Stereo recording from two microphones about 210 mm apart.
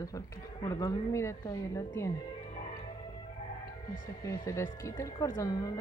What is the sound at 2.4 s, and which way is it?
Music, 30° left (ahead or behind).